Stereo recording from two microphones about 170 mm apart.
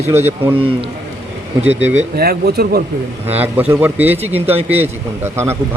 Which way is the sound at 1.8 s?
70° right (ahead or behind).